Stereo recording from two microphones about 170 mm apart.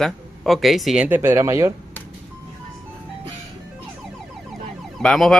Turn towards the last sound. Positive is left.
turn(degrees=0)  # may be behind; listen again after turning